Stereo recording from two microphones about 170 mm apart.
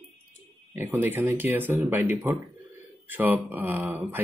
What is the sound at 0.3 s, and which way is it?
Speech, 10° right (ahead or behind).